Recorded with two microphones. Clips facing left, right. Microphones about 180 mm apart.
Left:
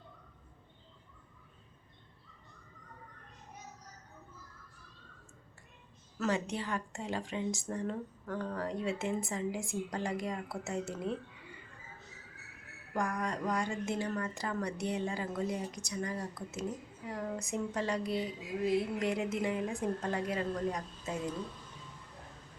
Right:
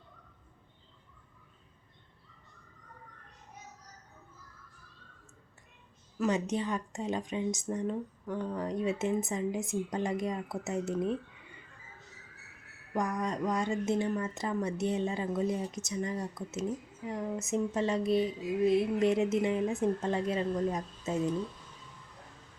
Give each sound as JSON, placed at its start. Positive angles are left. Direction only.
{"t": 6.1, "sound": "speech", "side_deg": -20}
{"t": 12.9, "sound": "speech", "side_deg": -20}